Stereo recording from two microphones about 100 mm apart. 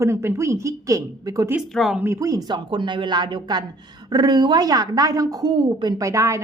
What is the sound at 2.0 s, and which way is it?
A woman's voice, 30° right (ahead or behind).